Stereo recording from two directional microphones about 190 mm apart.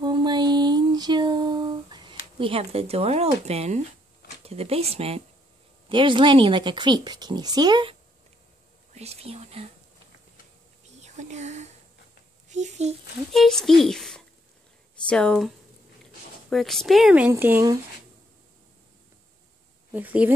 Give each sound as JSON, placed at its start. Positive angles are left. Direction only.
{"t": 0.0, "sound": "female singing", "side_deg": -20}
{"t": 2.3, "sound": "speech", "side_deg": -30}
{"t": 11.0, "sound": "speech", "side_deg": -35}
{"t": 13.3, "sound": "speech", "side_deg": 0}
{"t": 19.9, "sound": "speech", "side_deg": -10}